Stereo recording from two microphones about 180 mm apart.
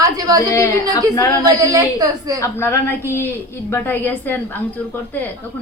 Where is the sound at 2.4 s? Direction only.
15° left (ahead or behind).